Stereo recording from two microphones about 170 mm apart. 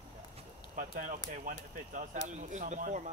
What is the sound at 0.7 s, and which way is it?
Speech, 50° right (ahead or behind).